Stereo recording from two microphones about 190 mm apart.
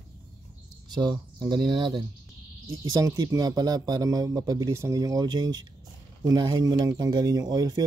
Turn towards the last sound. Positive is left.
turn(degrees=-20)  # may be behind; listen again after turning